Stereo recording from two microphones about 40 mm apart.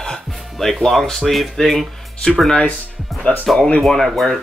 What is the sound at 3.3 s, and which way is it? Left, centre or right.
Speech, left.